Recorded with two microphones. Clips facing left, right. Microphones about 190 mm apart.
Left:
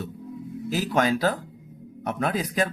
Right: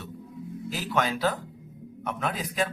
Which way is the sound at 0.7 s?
40° left (ahead or behind).